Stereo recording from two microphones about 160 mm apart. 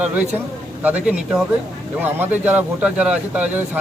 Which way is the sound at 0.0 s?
10° right (ahead or behind).